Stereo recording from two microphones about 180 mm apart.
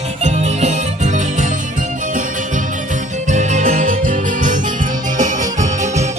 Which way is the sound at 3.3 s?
40° right (ahead or behind).